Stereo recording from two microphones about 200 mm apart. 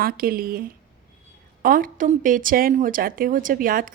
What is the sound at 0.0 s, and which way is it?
A woman's voice, 45° right (ahead or behind).